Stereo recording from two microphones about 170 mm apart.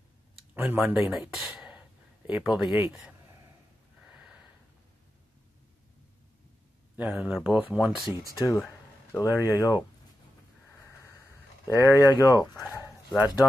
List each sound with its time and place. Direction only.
0.6 s speech: 10° right (ahead or behind)
1.1 s a sound: centre (ahead or behind)
2.4 s speech: 5° right (ahead or behind)
7.0 s speech: 10° right (ahead or behind)
8.1 s speech: 20° right (ahead or behind)
8.4 s speech: 15° left (ahead or behind)
10.8 s a sound: 15° left (ahead or behind)
11.7 s speech: 20° left (ahead or behind)
12.7 s dog: 20° left (ahead or behind)